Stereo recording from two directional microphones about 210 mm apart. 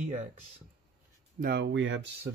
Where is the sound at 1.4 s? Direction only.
45° right (ahead or behind).